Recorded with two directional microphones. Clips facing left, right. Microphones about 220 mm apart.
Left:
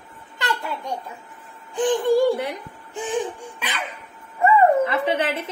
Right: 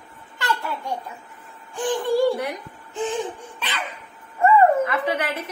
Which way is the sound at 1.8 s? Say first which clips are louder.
Left 3 dB; 25° left (ahead or behind).